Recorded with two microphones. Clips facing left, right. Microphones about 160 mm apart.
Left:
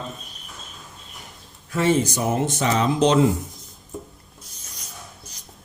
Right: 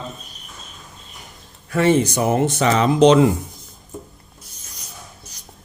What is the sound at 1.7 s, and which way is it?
Speech, 65° right (ahead or behind).